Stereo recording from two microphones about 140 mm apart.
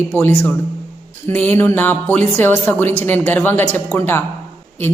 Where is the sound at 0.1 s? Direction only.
15° left (ahead or behind).